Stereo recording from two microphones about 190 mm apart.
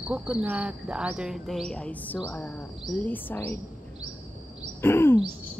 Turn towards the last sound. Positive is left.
turn(degrees=10)  # may be behind; listen again after turning